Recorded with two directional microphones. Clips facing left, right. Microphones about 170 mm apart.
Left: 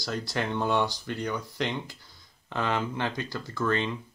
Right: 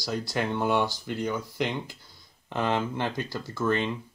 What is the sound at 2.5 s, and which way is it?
Speech, 20° right (ahead or behind).